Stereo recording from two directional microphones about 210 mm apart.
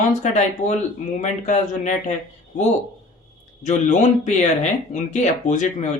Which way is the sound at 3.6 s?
35° left (ahead or behind).